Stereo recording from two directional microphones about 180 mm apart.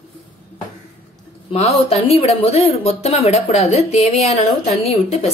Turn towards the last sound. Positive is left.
turn(degrees=35)  # may be behind; listen again after turning